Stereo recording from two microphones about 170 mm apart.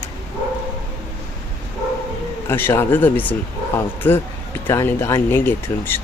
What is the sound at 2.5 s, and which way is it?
Speech, 15° left (ahead or behind).